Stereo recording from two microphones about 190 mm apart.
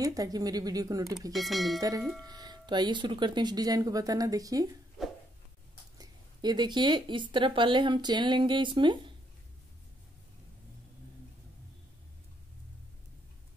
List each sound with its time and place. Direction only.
0.0 s a woman's voice: 20° right (ahead or behind)
1.3 s speech: centre (ahead or behind)
1.8 s a woman's voice: 20° right (ahead or behind)
5.9 s a woman's voice: 20° right (ahead or behind)